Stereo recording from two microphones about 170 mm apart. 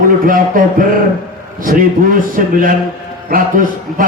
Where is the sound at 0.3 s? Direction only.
55° right (ahead or behind).